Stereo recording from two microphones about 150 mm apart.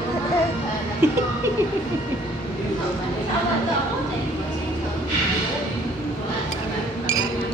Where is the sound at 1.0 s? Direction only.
15° right (ahead or behind).